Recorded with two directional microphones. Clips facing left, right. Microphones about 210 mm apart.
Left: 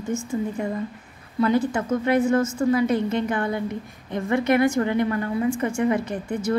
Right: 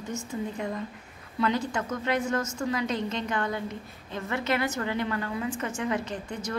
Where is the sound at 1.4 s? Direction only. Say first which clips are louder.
Left 7 dB; 10° left (ahead or behind).